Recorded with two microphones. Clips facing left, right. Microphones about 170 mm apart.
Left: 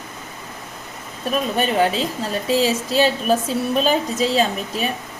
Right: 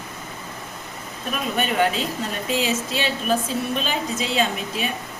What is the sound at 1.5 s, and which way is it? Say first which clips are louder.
A woman's voice: left 1 dB; 35° left (ahead or behind).